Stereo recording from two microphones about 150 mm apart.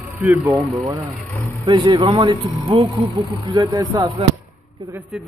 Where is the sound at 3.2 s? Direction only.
25° right (ahead or behind).